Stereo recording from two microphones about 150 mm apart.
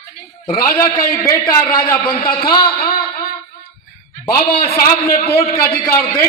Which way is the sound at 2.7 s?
90° left.